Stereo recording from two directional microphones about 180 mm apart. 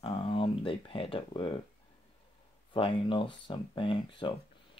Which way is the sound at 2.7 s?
30° left (ahead or behind).